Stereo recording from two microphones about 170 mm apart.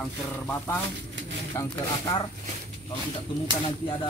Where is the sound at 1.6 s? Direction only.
15° left (ahead or behind).